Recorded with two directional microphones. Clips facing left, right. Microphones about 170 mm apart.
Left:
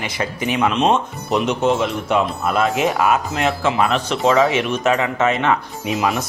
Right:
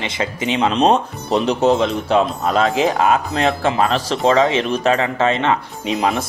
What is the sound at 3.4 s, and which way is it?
Speech, 30° right (ahead or behind).